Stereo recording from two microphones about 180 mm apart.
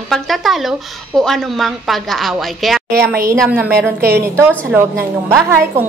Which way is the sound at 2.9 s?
15° right (ahead or behind).